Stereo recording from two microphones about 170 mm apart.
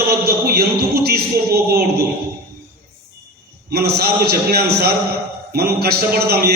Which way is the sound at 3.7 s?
70° right (ahead or behind).